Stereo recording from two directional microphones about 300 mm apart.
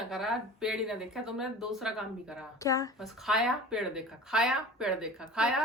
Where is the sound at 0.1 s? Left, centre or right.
Centre.